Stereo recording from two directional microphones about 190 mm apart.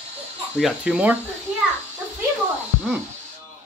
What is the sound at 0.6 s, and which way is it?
Speech, 5° right (ahead or behind).